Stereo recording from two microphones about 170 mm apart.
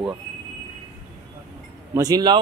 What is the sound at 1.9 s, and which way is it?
Speech, 20° right (ahead or behind).